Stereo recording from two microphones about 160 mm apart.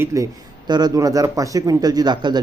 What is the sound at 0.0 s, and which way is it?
Speech, 20° right (ahead or behind).